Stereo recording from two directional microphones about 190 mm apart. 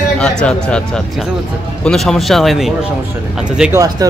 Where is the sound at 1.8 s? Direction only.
Centre (ahead or behind).